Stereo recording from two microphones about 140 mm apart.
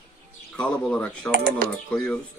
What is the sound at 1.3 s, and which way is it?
Speech, 90° right.